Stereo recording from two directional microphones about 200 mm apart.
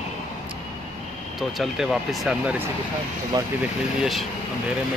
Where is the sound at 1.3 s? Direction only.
Centre (ahead or behind).